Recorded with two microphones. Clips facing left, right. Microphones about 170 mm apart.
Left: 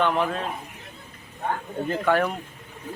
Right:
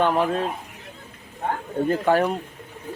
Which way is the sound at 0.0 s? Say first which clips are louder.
Right 3 dB; 35° right (ahead or behind).